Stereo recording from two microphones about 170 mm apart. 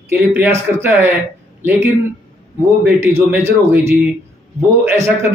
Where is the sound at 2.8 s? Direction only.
15° right (ahead or behind).